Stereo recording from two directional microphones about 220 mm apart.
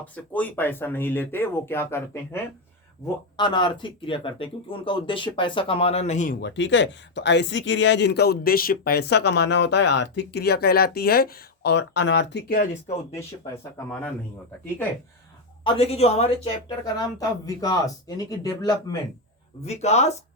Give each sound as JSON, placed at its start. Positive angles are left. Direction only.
{"t": 0.0, "sound": "speech", "side_deg": 5}
{"t": 6.4, "sound": "speech", "side_deg": 55}
{"t": 15.6, "sound": "speech", "side_deg": 25}
{"t": 16.6, "sound": "speech", "side_deg": 15}
{"t": 19.6, "sound": "speech", "side_deg": 30}